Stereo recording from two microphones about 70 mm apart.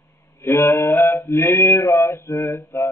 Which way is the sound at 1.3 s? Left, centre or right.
Left.